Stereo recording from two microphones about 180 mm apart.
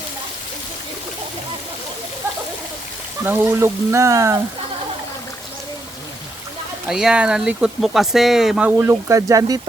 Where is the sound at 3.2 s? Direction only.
10° right (ahead or behind).